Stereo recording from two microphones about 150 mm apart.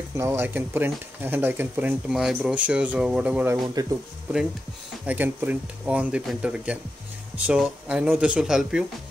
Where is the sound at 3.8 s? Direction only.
25° right (ahead or behind).